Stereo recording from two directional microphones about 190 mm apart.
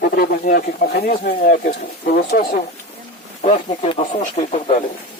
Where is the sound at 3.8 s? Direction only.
25° left (ahead or behind).